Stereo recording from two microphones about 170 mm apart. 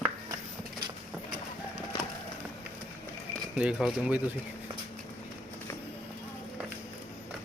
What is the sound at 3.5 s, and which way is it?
Speech, 5° right (ahead or behind).